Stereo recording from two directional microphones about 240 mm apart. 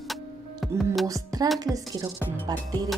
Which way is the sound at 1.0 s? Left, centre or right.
Centre.